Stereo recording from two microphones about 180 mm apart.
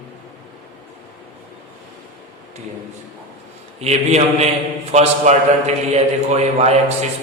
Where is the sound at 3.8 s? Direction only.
35° right (ahead or behind).